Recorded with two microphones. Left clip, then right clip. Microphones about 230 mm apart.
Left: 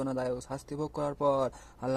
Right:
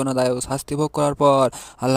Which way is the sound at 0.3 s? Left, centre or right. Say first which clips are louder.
Right 12 dB; right.